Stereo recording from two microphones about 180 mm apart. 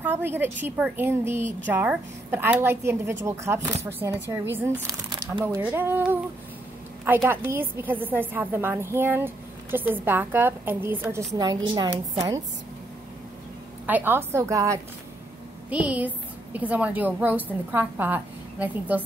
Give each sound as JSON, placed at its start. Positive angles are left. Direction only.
{"t": 0.0, "sound": "speech", "side_deg": -10}
{"t": 7.2, "sound": "speech", "side_deg": -10}
{"t": 11.3, "sound": "a woman's voice", "side_deg": -25}
{"t": 13.8, "sound": "speech", "side_deg": -10}